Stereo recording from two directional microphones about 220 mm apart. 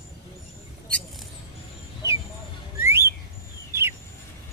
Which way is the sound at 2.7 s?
10° right (ahead or behind).